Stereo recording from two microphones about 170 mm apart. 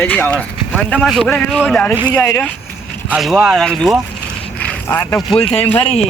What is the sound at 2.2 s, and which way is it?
Speech, 10° left (ahead or behind).